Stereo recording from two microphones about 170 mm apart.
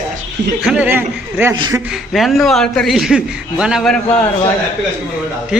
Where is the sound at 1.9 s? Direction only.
Centre (ahead or behind).